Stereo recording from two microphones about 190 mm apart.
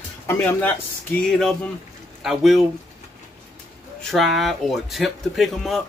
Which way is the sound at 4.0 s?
Centre (ahead or behind).